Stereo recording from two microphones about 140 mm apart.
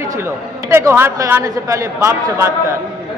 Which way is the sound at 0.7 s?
15° right (ahead or behind).